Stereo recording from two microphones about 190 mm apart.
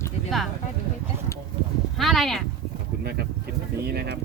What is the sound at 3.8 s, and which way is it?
Speech, 55° right (ahead or behind).